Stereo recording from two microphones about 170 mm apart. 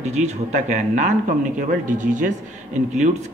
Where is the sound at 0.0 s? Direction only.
45° right (ahead or behind).